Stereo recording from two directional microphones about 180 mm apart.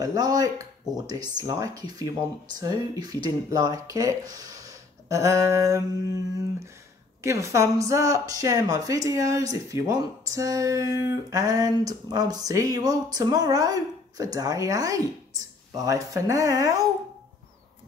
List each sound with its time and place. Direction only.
0.0 s speech: 20° right (ahead or behind)
7.2 s speech: 15° right (ahead or behind)